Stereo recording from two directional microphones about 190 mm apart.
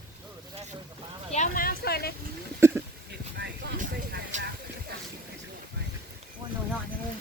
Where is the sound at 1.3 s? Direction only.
45° left (ahead or behind).